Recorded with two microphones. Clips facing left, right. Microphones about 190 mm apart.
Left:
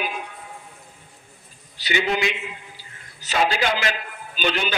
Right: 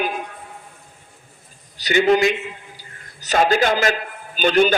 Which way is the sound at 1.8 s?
45° right (ahead or behind).